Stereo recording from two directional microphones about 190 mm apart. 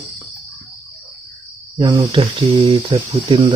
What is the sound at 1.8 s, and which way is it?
Speech, 25° right (ahead or behind).